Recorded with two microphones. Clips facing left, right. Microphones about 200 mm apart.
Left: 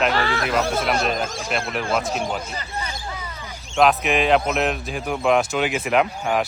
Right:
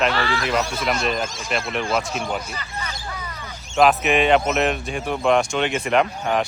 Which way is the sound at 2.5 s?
30° left (ahead or behind).